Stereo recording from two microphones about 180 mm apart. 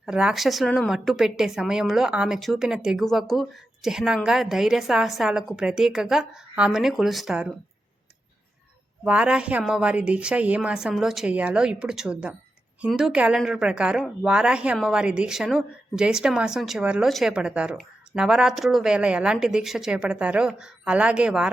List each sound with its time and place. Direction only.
0.0 s a woman's voice: 5° right (ahead or behind)
9.0 s a woman's voice: 5° right (ahead or behind)